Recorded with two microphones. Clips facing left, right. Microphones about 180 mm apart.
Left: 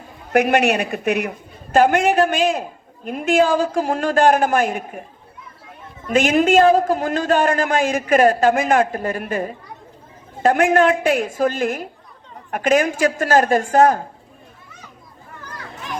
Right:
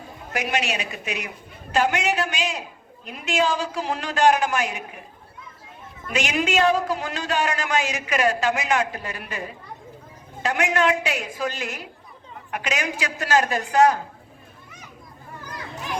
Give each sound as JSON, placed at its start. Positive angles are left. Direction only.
{"t": 0.3, "sound": "a man's voice", "side_deg": 60}
{"t": 6.1, "sound": "a man's voice", "side_deg": 50}